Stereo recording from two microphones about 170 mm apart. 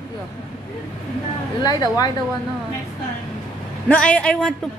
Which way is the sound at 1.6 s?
25° left (ahead or behind).